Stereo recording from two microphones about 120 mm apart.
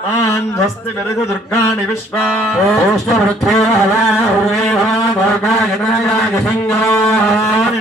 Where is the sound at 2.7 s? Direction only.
Centre (ahead or behind).